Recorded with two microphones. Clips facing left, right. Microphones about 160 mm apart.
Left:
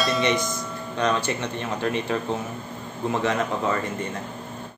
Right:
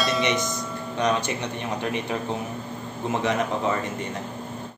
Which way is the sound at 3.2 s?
20° right (ahead or behind).